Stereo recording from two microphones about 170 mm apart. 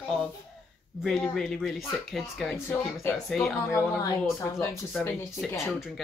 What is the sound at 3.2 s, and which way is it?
Speech, centre (ahead or behind).